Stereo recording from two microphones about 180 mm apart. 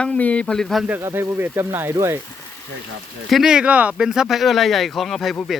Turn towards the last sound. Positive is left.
turn(degrees=0)  # may be behind; listen again after turning